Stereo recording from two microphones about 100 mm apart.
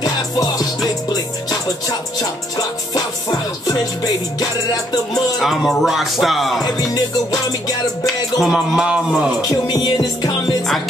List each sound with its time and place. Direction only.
0.0 s music: 40° left (ahead or behind)
2.5 s music: 40° left (ahead or behind)
5.4 s speech: centre (ahead or behind)
6.6 s music: 40° left (ahead or behind)
8.4 s speech: 5° right (ahead or behind)
9.5 s music: 45° left (ahead or behind)